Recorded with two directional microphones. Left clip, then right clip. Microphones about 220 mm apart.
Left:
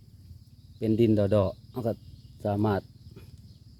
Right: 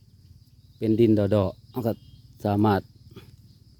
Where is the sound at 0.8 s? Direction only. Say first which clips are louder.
Right 3 dB; 25° right (ahead or behind).